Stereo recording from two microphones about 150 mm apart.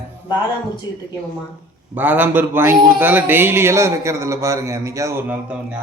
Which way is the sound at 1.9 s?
10° right (ahead or behind).